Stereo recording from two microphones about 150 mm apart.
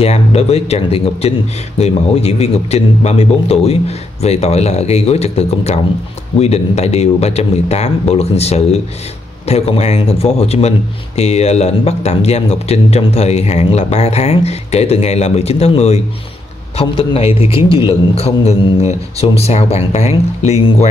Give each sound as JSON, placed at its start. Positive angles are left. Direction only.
{"t": 0.0, "sound": "a man's voice", "side_deg": 45}